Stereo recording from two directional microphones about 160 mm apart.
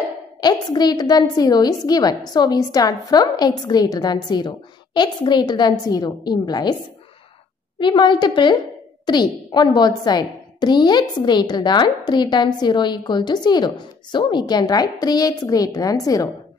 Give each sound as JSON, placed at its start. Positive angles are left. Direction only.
{"t": 0.4, "sound": "a woman's voice", "side_deg": 25}
{"t": 7.8, "sound": "a woman's voice", "side_deg": 30}